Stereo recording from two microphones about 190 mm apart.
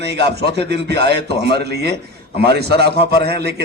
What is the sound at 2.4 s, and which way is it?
A man's voice, 60° right (ahead or behind).